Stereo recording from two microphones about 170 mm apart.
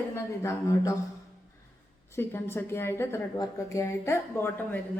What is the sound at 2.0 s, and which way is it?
A woman's voice, 15° left (ahead or behind).